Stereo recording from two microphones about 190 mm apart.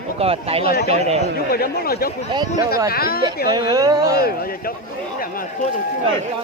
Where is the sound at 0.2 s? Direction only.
30° right (ahead or behind).